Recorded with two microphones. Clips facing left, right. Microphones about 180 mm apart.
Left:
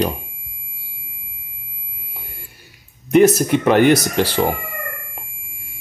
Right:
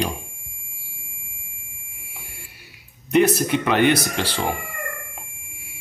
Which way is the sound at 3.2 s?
45° left (ahead or behind).